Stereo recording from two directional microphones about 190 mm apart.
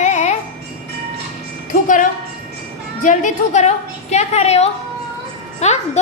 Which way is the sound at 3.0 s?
40° left (ahead or behind).